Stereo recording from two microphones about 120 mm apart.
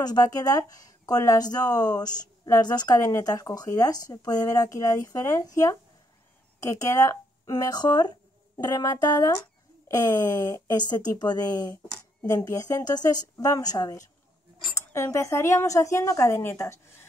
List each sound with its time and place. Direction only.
0.0 s speech: 30° left (ahead or behind)